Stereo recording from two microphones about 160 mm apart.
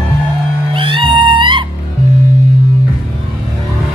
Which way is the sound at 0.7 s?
35° right (ahead or behind).